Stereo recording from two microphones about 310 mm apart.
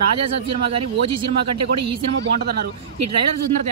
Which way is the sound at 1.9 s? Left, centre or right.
Right.